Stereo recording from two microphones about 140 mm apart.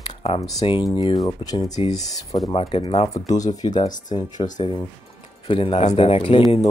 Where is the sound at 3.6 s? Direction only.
30° left (ahead or behind).